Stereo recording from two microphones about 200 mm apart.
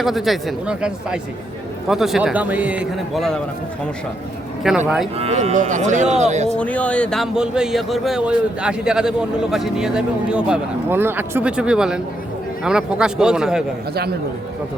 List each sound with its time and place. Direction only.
0.0 s speech: centre (ahead or behind)
4.7 s speech: centre (ahead or behind)
5.1 s speech: 30° right (ahead or behind)
6.6 s speech: 5° left (ahead or behind)